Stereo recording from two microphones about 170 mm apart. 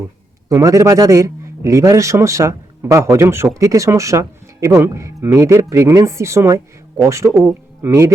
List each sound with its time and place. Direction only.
0.4 s speech: 20° right (ahead or behind)